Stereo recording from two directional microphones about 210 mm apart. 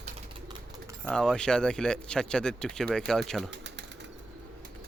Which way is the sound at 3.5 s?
55° right (ahead or behind).